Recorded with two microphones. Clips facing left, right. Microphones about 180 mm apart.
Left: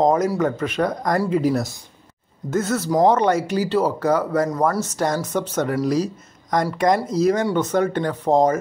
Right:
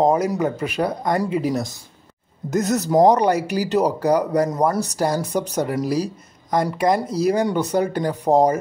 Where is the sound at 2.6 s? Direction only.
40° right (ahead or behind).